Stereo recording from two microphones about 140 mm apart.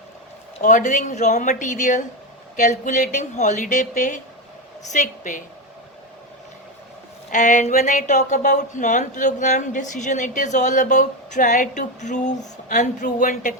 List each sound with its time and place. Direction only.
0.6 s a woman's voice: 60° left (ahead or behind)
7.3 s a woman's voice: 60° left (ahead or behind)